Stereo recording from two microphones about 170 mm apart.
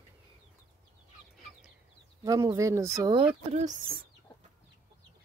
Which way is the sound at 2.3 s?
20° right (ahead or behind).